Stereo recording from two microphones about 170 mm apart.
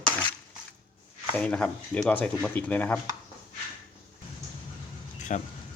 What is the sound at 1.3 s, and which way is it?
Speech, 5° left (ahead or behind).